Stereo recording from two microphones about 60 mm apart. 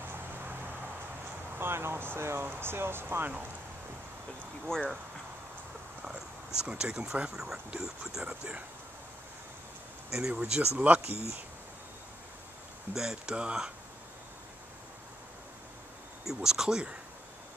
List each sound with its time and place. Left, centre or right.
0.0 s vehicle: right
1.6 s speech: right
4.6 s speech: centre
6.6 s speech: centre
10.1 s speech: centre
10.9 s speech: right
12.9 s speech: centre
16.3 s speech: centre